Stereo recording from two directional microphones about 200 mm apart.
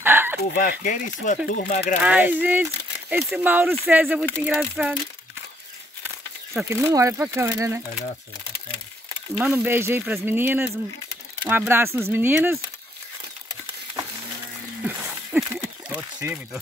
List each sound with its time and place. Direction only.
0.0 s chicken: 10° right (ahead or behind)
0.6 s speech: 40° left (ahead or behind)
2.0 s speech: 10° right (ahead or behind)
6.0 s speech: 10° right (ahead or behind)
9.4 s speech: 10° right (ahead or behind)
14.8 s wild animals: 10° right (ahead or behind)
15.9 s a sound: 10° right (ahead or behind)